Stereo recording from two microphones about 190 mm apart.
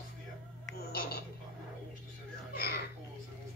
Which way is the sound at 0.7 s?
55° left (ahead or behind).